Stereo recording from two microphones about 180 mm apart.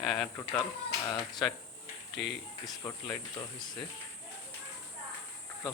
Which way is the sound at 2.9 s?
20° left (ahead or behind).